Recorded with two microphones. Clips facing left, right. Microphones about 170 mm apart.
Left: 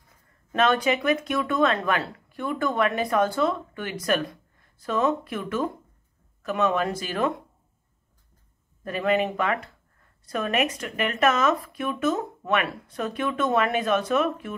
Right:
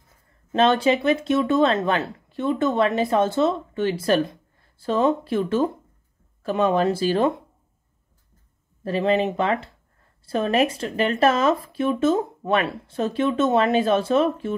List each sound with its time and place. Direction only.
0.5 s speech: 30° right (ahead or behind)
8.8 s speech: 30° right (ahead or behind)